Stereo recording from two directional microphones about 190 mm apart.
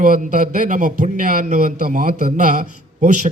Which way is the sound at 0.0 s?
45° right (ahead or behind).